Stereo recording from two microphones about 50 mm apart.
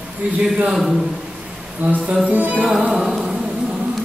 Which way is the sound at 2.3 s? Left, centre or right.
Right.